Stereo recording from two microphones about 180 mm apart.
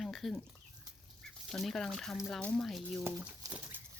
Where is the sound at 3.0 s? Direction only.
20° right (ahead or behind).